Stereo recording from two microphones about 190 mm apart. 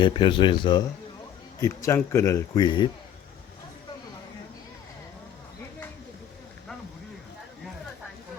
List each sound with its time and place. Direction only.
0.0 s speech: 25° left (ahead or behind)